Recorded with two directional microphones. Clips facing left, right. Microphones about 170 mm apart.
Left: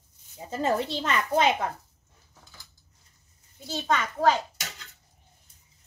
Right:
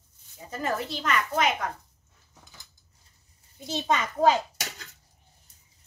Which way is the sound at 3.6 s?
20° right (ahead or behind).